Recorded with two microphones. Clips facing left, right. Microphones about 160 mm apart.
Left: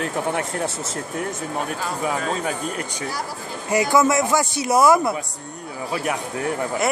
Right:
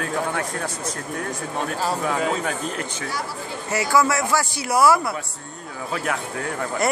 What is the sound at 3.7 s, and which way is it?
Speech, 20° left (ahead or behind).